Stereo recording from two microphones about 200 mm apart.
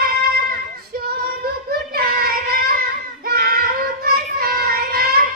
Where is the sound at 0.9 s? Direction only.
50° right (ahead or behind).